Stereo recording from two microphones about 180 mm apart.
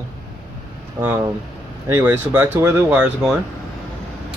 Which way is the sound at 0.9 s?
10° right (ahead or behind).